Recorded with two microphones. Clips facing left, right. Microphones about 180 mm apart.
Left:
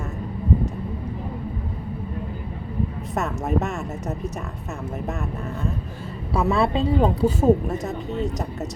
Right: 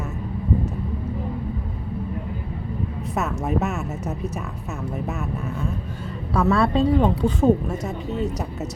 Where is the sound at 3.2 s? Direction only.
Centre (ahead or behind).